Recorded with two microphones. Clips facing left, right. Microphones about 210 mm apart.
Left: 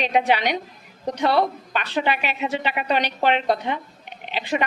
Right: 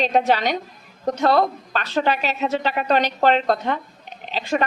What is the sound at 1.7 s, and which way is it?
Speech, 40° right (ahead or behind).